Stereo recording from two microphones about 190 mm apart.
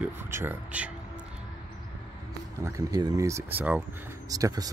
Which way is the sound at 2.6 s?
20° right (ahead or behind).